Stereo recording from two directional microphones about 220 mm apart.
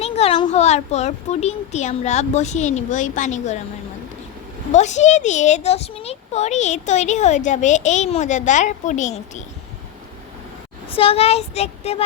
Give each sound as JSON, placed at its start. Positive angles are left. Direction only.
{"t": 0.0, "sound": "a child's voice", "side_deg": 25}
{"t": 4.7, "sound": "a child's voice", "side_deg": 30}
{"t": 10.8, "sound": "speech", "side_deg": 25}